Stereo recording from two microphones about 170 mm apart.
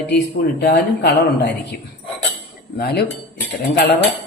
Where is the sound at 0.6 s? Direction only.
70° left (ahead or behind).